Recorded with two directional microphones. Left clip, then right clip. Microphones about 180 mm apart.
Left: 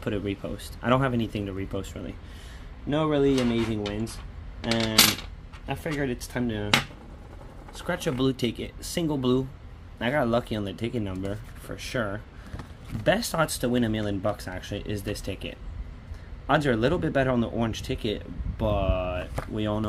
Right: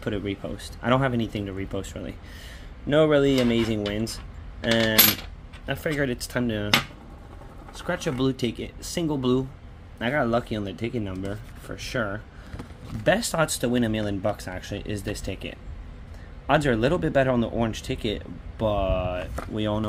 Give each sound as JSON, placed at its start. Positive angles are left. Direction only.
{"t": 0.0, "sound": "speech", "side_deg": 0}
{"t": 2.9, "sound": "speech", "side_deg": -30}
{"t": 5.7, "sound": "speech", "side_deg": -30}
{"t": 7.7, "sound": "speech", "side_deg": -5}